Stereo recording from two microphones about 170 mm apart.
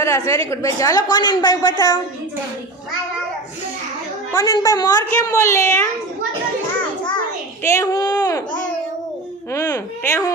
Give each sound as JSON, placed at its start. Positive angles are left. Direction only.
{"t": 0.0, "sound": "a woman's voice", "side_deg": 15}
{"t": 4.3, "sound": "a woman's voice", "side_deg": 20}
{"t": 7.6, "sound": "speech", "side_deg": 15}
{"t": 9.5, "sound": "speech", "side_deg": 20}